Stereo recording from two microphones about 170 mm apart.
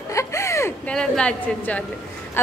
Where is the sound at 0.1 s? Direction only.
15° left (ahead or behind).